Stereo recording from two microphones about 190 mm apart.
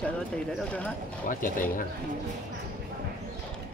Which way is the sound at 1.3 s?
45° left (ahead or behind).